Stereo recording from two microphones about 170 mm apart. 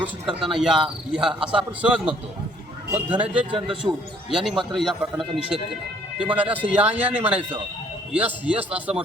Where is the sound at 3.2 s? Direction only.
30° right (ahead or behind).